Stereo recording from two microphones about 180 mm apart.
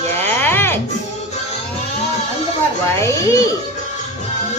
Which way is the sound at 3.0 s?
15° left (ahead or behind).